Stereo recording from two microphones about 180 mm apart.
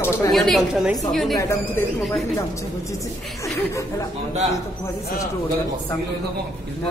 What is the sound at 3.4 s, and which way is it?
Speech, 15° left (ahead or behind).